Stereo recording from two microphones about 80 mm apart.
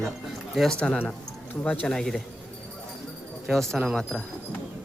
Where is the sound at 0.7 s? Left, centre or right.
Centre.